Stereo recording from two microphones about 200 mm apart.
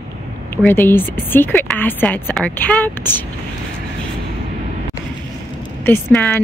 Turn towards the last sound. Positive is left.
turn(degrees=10)  # may be behind; listen again after turning